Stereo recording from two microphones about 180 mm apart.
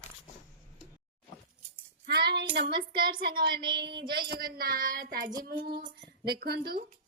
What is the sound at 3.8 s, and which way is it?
Speech, 70° right (ahead or behind).